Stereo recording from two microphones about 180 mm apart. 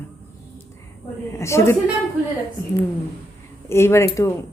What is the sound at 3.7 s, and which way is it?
Speech, 15° left (ahead or behind).